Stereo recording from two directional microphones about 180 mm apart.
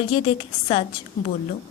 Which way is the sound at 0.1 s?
30° left (ahead or behind).